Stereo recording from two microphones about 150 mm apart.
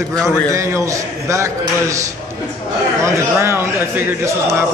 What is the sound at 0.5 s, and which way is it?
Speech, 20° right (ahead or behind).